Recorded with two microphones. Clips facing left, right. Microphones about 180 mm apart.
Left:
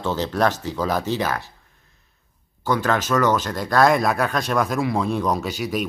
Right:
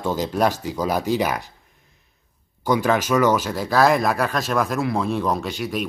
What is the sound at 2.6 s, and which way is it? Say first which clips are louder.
Speech: right 2 dB; 10° right (ahead or behind).